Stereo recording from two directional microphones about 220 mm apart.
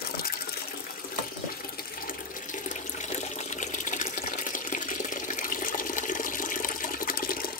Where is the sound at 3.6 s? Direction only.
40° left (ahead or behind).